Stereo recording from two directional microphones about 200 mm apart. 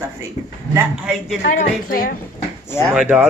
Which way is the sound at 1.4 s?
40° left (ahead or behind).